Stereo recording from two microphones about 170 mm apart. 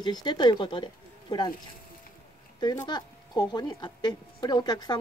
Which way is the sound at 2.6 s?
25° left (ahead or behind).